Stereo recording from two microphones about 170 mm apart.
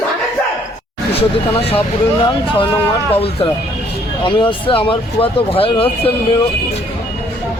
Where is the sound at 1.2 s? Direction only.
35° left (ahead or behind).